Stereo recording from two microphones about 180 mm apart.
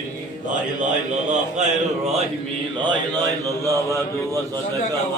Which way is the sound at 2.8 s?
20° right (ahead or behind).